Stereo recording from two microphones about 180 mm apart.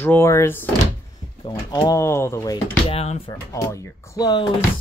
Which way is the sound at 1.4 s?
25° left (ahead or behind).